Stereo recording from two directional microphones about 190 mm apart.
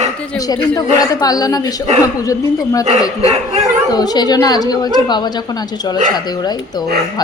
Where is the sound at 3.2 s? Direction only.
35° right (ahead or behind).